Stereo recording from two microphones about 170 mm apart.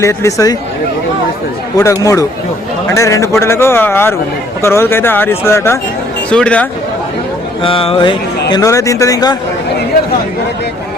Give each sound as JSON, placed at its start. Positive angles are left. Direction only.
{"t": 0.0, "sound": "a man's voice", "side_deg": 15}
{"t": 1.7, "sound": "a man's voice", "side_deg": 20}
{"t": 7.6, "sound": "speech", "side_deg": 30}